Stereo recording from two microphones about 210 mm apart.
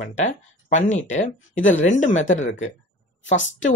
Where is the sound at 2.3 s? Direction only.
65° left (ahead or behind).